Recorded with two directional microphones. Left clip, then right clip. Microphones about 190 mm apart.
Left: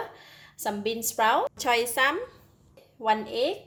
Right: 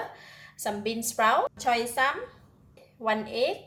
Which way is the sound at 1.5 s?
50° left (ahead or behind).